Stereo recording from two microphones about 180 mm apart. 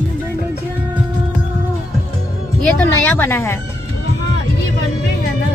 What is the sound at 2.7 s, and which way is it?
Speech, 10° left (ahead or behind).